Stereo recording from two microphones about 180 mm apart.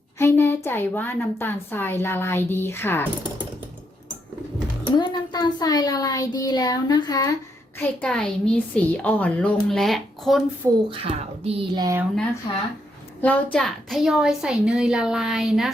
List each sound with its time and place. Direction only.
0.2 s a woman's voice: 15° left (ahead or behind)
4.9 s a child's voice: 25° left (ahead or behind)
7.8 s a woman's voice: 5° left (ahead or behind)
10.8 s speech: 30° right (ahead or behind)
13.2 s a woman's voice: 5° left (ahead or behind)